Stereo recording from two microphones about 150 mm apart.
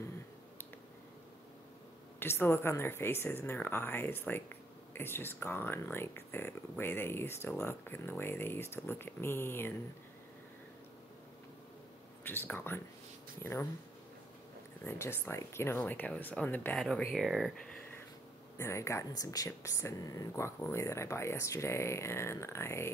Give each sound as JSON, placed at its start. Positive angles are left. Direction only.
{"t": 2.1, "sound": "speech", "side_deg": 15}
{"t": 12.2, "sound": "speech", "side_deg": 15}
{"t": 14.9, "sound": "speech", "side_deg": 15}
{"t": 16.7, "sound": "speech", "side_deg": 0}
{"t": 18.6, "sound": "speech", "side_deg": 20}